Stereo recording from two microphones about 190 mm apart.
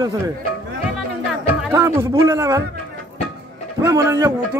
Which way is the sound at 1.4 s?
10° right (ahead or behind).